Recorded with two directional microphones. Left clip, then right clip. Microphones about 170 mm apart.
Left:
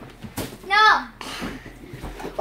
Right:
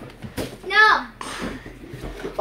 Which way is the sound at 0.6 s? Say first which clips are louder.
Even; 30° left (ahead or behind).